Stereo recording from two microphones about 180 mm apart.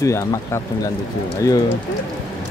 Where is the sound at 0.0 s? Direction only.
15° left (ahead or behind).